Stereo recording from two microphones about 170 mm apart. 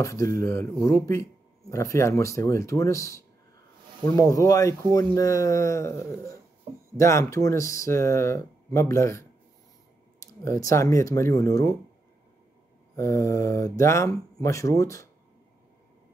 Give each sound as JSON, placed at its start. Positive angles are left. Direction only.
{"t": 0.0, "sound": "speech", "side_deg": 20}
{"t": 10.2, "sound": "speech", "side_deg": 20}
{"t": 12.9, "sound": "speech", "side_deg": 15}